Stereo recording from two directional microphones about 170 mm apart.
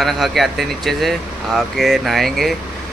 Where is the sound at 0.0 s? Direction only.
Centre (ahead or behind).